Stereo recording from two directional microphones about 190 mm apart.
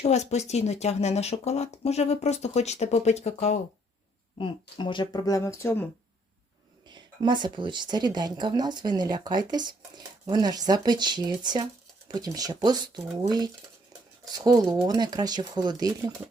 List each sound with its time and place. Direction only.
0.0 s speech: 35° left (ahead or behind); by 5.8 s 15° left (ahead or behind)
6.9 s speech: 20° right (ahead or behind)